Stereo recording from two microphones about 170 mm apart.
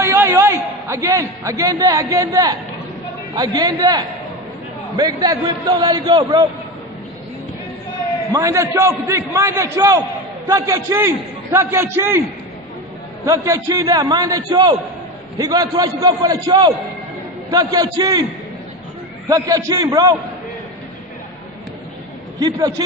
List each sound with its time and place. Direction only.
0.0 s a man's voice: 15° right (ahead or behind)
3.3 s a man's voice: 25° right (ahead or behind)
8.3 s a man's voice: 20° right (ahead or behind)
13.2 s a man's voice: 20° right (ahead or behind)
19.2 s a man's voice: 20° right (ahead or behind)
22.4 s a man's voice: 25° right (ahead or behind)